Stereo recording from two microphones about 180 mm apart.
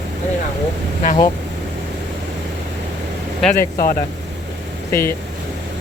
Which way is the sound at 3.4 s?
5° left (ahead or behind).